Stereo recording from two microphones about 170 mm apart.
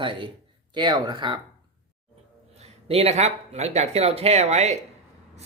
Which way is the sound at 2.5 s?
40° right (ahead or behind).